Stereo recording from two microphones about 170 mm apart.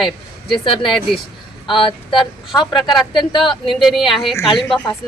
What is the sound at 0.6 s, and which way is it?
Speech, 30° left (ahead or behind).